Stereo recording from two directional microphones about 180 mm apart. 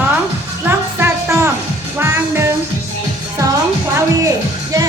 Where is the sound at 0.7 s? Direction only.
15° right (ahead or behind).